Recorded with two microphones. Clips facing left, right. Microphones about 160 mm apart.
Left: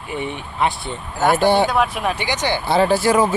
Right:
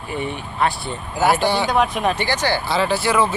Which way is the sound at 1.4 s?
50° left (ahead or behind).